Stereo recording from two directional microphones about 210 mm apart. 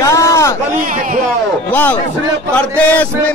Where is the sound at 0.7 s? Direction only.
40° right (ahead or behind).